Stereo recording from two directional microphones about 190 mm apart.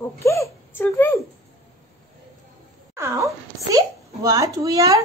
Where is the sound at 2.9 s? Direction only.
15° right (ahead or behind).